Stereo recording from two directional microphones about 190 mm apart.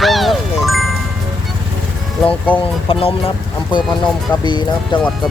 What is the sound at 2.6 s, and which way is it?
Speech, 30° left (ahead or behind).